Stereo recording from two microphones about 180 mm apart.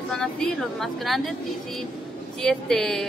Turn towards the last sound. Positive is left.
turn(degrees=0)  # may be behind; listen again after turning